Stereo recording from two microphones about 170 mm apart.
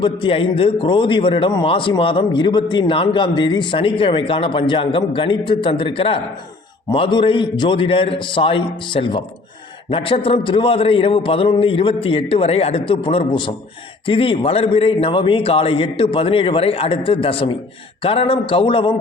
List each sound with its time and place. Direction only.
0.0 s a man's voice: 30° left (ahead or behind)